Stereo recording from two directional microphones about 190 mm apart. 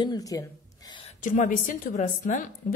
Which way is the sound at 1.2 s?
40° left (ahead or behind).